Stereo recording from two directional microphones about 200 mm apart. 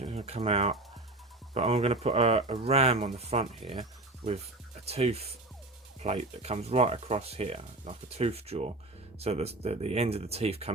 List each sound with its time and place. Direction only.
0.0 s speech: 30° right (ahead or behind)
4.9 s speech: 30° right (ahead or behind)